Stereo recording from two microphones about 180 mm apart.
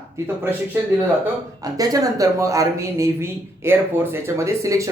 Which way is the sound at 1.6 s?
20° right (ahead or behind).